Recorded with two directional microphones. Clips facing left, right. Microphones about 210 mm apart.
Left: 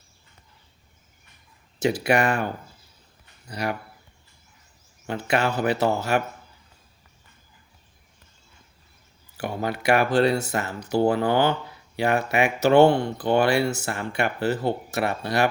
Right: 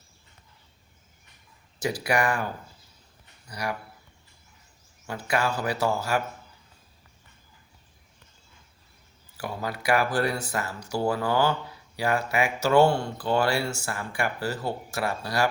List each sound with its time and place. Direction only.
1.8 s speech: 25° left (ahead or behind)
3.5 s speech: 25° left (ahead or behind)
5.0 s speech: 25° left (ahead or behind)
9.4 s speech: 25° left (ahead or behind)